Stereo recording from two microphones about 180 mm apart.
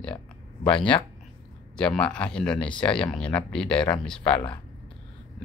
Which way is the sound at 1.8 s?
5° left (ahead or behind).